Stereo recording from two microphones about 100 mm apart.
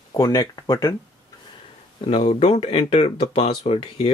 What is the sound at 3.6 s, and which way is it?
Speech, 70° left (ahead or behind).